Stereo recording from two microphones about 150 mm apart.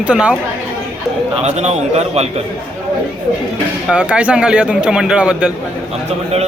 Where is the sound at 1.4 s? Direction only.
45° right (ahead or behind).